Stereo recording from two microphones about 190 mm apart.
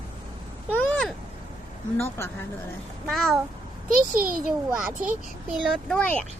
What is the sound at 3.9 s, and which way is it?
Speech, 45° right (ahead or behind).